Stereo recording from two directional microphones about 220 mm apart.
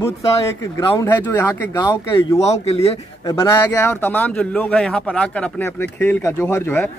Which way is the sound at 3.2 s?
15° left (ahead or behind).